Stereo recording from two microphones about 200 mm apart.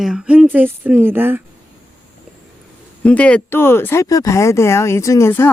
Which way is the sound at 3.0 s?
5° left (ahead or behind).